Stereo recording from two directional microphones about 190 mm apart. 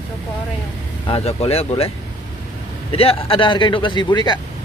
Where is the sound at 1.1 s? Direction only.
30° left (ahead or behind).